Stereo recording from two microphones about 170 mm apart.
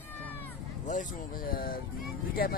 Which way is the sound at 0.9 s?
50° left (ahead or behind).